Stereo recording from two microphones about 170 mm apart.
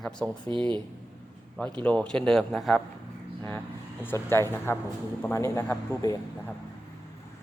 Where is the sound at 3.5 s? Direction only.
10° left (ahead or behind).